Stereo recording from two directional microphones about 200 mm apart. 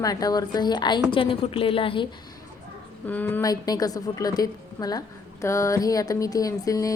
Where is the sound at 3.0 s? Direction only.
10° left (ahead or behind).